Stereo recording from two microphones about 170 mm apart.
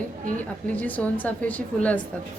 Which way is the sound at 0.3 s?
10° left (ahead or behind).